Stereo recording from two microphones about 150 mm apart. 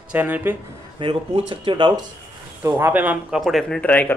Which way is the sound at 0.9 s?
35° right (ahead or behind).